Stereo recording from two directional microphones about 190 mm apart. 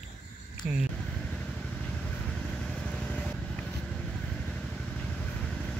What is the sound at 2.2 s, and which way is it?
Vehicle, 5° left (ahead or behind).